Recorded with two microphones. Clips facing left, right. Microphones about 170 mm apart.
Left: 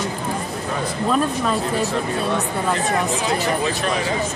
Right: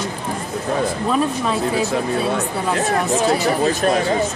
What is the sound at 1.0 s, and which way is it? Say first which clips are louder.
Speech: left 3 dB; 5° right (ahead or behind).